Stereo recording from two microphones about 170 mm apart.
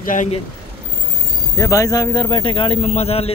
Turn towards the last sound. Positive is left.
turn(degrees=35)  # may be behind; listen again after turning